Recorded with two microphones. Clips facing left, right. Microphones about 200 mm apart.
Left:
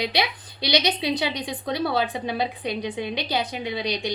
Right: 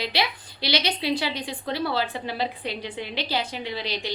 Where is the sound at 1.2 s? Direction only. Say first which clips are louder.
Left 2 dB; 15° left (ahead or behind).